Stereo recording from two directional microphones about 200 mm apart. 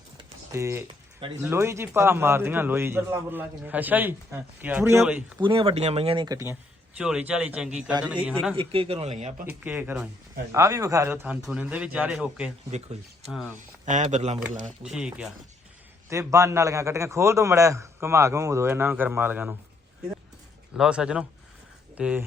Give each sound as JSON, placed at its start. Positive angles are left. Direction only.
{"t": 0.2, "sound": "typing", "side_deg": -15}
{"t": 1.2, "sound": "a man's voice", "side_deg": -25}
{"t": 1.5, "sound": "a man's voice", "side_deg": -15}
{"t": 5.4, "sound": "a man's voice", "side_deg": -25}
{"t": 8.5, "sound": "a man's voice", "side_deg": -25}
{"t": 9.5, "sound": "a man's voice", "side_deg": -10}
{"t": 13.6, "sound": "speech", "side_deg": -40}
{"t": 14.6, "sound": "speech", "side_deg": -5}
{"t": 16.0, "sound": "a man's voice", "side_deg": -15}
{"t": 20.7, "sound": "speech", "side_deg": -5}